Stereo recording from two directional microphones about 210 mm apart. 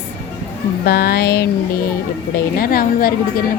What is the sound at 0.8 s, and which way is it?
Speech, 50° left (ahead or behind).